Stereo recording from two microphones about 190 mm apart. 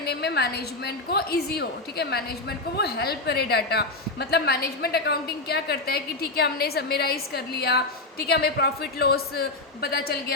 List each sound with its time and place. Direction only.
0.1 s a woman's voice: 60° left (ahead or behind)